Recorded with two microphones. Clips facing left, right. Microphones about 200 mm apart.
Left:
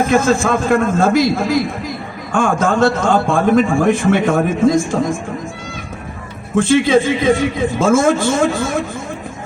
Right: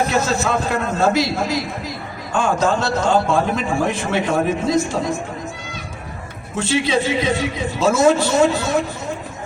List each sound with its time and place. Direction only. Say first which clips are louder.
0.0 s a man's voice: left 5 dB; 50° left (ahead or behind)
6.6 s a man's voice: left 7 dB; 50° left (ahead or behind)